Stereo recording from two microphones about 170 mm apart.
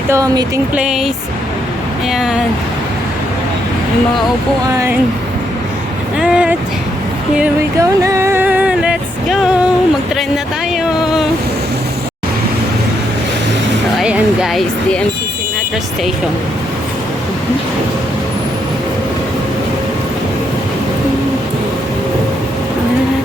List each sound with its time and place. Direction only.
0.1 s speech: 20° right (ahead or behind)
0.8 s speech: 5° right (ahead or behind)
4.7 s speech: 15° right (ahead or behind)
6.1 s speech: 5° right (ahead or behind)
7.8 s music: 15° right (ahead or behind)
14.0 s music: 5° right (ahead or behind)